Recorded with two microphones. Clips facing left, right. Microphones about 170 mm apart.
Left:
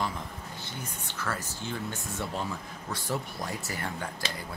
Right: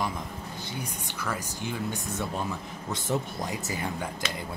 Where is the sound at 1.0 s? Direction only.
15° right (ahead or behind).